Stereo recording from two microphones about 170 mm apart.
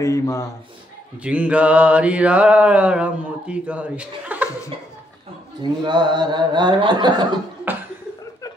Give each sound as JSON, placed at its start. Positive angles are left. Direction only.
{"t": 0.0, "sound": "a man's voice", "side_deg": 20}
{"t": 1.2, "sound": "mantra", "side_deg": -5}
{"t": 5.6, "sound": "speech", "side_deg": -25}